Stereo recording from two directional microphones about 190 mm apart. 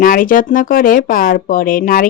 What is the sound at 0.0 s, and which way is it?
Speech, 45° left (ahead or behind).